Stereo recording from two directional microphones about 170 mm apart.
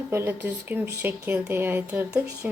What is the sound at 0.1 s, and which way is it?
A woman's voice, 15° right (ahead or behind).